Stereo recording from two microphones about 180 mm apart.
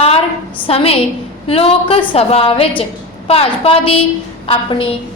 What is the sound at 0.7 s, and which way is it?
A woman's voice, 30° left (ahead or behind).